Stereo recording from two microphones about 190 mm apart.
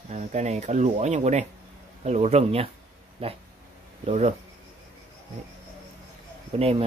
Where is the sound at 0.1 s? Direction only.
35° right (ahead or behind).